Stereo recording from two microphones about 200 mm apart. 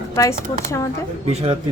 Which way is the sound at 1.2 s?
30° right (ahead or behind).